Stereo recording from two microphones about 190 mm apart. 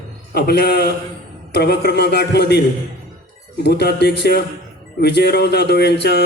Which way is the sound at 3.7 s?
60° left (ahead or behind).